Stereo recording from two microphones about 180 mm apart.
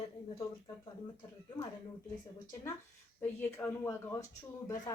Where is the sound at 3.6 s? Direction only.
15° left (ahead or behind).